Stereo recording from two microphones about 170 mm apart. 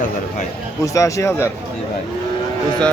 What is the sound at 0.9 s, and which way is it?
Speech, 20° left (ahead or behind).